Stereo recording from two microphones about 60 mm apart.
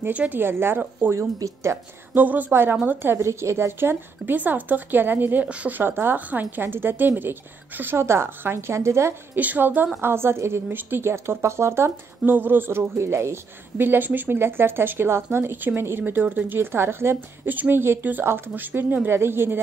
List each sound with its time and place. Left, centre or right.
0.1 s speech: right
0.4 s speech: right
1.4 s a woman's voice: right
2.1 s speech: right
3.3 s speech: right
5.8 s speech: right
9.3 s speech: right
10.0 s a woman's voice: right
12.3 s speech: right